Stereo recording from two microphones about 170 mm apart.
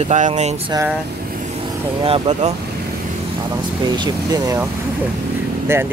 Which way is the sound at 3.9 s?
25° right (ahead or behind).